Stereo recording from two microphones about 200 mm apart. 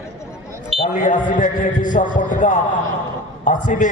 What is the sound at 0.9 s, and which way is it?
A man's voice, 40° left (ahead or behind).